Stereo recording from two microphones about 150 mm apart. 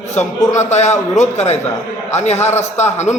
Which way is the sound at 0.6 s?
50° left (ahead or behind).